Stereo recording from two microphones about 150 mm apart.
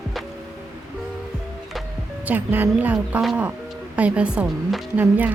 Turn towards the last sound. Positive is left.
turn(degrees=-10)  # may be behind; listen again after turning